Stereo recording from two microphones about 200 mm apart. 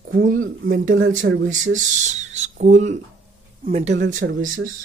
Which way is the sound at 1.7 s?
35° right (ahead or behind).